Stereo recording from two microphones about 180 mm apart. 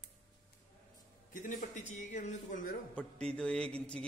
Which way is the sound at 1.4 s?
40° left (ahead or behind).